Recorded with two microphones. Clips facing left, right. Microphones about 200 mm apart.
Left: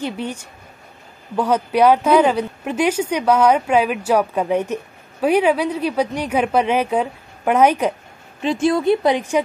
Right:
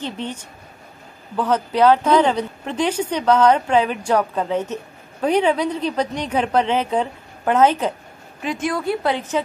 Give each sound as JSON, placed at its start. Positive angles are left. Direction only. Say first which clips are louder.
{"t": 0.0, "sound": "a woman's voice", "louder": "left 3 dB", "side_deg": 10}
{"t": 8.4, "sound": "a woman's voice", "louder": "left 6 dB", "side_deg": 30}